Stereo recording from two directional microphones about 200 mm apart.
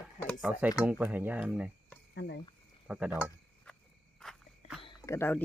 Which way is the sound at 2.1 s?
55° left (ahead or behind).